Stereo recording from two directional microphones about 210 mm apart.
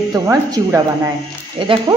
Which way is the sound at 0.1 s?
15° right (ahead or behind).